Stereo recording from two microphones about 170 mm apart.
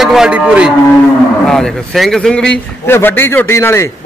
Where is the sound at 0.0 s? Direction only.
5° right (ahead or behind).